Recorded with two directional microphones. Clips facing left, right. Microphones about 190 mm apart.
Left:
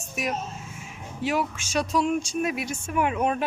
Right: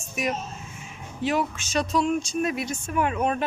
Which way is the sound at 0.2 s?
Centre (ahead or behind).